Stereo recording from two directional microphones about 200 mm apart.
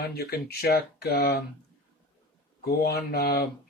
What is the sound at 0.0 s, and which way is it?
Speech, 55° left (ahead or behind).